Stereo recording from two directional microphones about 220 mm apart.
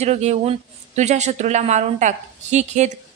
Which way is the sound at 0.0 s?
30° right (ahead or behind).